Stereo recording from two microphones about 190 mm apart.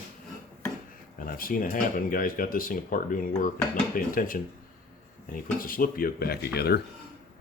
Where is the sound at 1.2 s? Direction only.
50° left (ahead or behind).